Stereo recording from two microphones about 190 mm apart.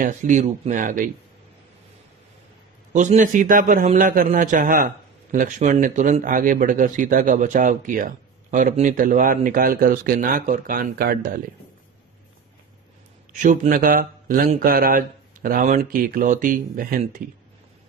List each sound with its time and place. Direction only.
0.0 s a man's voice: 40° right (ahead or behind)
2.9 s a man's voice: 40° right (ahead or behind)
13.3 s a man's voice: 45° right (ahead or behind)